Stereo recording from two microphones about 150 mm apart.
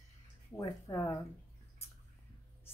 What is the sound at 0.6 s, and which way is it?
Speech, 20° left (ahead or behind).